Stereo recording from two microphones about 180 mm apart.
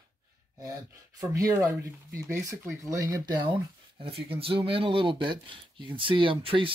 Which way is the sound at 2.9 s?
15° right (ahead or behind).